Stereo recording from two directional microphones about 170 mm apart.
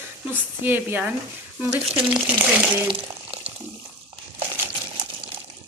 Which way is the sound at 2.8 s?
35° right (ahead or behind).